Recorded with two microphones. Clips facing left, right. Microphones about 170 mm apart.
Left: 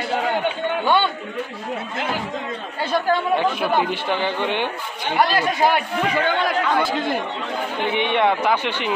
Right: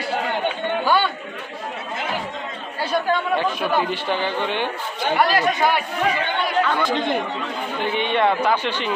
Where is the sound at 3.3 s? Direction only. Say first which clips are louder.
Left 1 dB; 15° left (ahead or behind).